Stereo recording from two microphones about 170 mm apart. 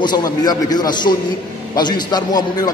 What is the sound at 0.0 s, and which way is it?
A man's voice, 25° left (ahead or behind).